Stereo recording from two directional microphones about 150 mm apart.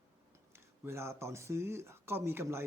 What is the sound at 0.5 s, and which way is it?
A man's voice, 15° right (ahead or behind).